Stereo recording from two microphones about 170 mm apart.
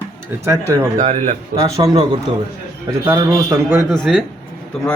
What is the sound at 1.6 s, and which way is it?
Speech, 20° right (ahead or behind).